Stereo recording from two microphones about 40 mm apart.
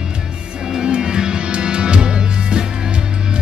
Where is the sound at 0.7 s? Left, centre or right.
Centre.